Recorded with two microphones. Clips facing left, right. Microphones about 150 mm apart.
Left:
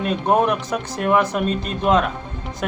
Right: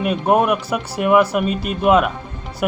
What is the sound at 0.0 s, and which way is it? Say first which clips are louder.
Speech: right 2 dB; 10° right (ahead or behind).